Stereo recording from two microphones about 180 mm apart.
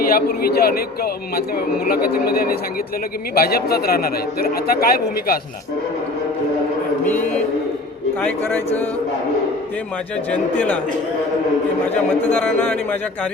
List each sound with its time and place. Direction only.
0.0 s a man's voice: 55° left (ahead or behind)
7.0 s mantra: 10° left (ahead or behind)
8.2 s a man's voice: 10° left (ahead or behind)
10.3 s a man's voice: 10° left (ahead or behind)
11.9 s a man's voice: 10° left (ahead or behind)